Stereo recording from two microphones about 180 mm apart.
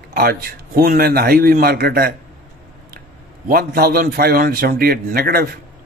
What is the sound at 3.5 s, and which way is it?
Speech, 60° right (ahead or behind).